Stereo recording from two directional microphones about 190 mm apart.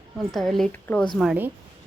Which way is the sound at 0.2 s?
Centre (ahead or behind).